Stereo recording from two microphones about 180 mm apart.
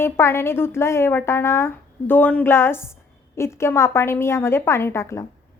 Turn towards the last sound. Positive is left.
turn(degrees=15)  # may be behind; listen again after turning